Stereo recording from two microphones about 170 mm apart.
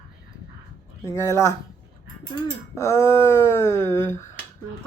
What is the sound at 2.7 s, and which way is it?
Speech, 15° left (ahead or behind).